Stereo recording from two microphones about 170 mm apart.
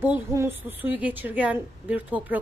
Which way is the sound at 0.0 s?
15° right (ahead or behind).